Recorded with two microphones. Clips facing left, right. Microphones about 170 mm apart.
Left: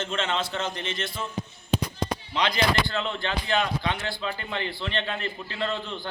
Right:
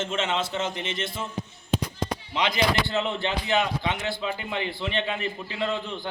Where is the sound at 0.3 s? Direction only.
20° right (ahead or behind).